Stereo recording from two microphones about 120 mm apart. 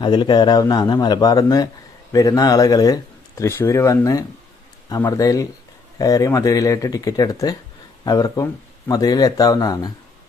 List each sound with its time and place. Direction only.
0.0 s speech: 40° left (ahead or behind)